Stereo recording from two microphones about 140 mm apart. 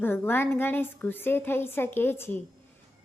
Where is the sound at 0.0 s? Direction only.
15° left (ahead or behind).